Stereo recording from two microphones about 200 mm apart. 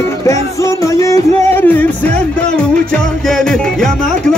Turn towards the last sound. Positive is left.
turn(degrees=5)  # may be behind; listen again after turning